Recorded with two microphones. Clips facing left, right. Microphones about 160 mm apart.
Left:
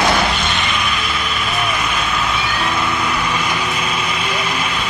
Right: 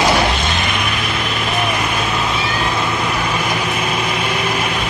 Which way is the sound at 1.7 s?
45° right (ahead or behind).